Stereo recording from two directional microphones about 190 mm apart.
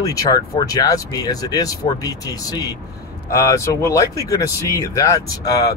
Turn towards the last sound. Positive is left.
turn(degrees=20)  # may be behind; listen again after turning